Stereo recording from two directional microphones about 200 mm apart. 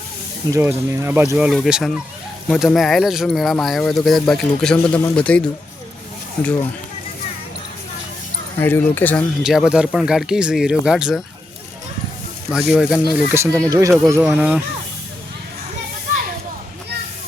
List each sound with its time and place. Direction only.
0.5 s speech: 15° right (ahead or behind); by 5.5 s 5° left (ahead or behind)
8.5 s speech: 10° left (ahead or behind)
9.4 s speech: 5° right (ahead or behind)
12.5 s speech: 5° right (ahead or behind)